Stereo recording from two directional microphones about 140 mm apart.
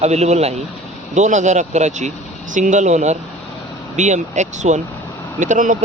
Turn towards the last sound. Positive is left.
turn(degrees=-60)  # may be behind; listen again after turning